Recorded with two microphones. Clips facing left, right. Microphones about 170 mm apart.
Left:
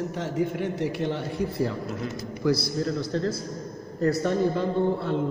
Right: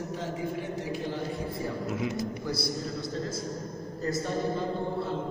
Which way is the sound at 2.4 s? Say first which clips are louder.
Left 14 dB; 90° left.